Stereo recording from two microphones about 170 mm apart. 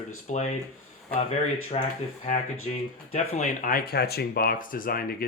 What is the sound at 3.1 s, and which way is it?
Speech, 50° left (ahead or behind).